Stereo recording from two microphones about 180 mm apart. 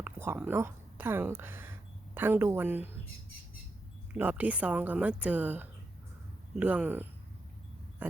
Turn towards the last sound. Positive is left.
turn(degrees=-10)  # may be behind; listen again after turning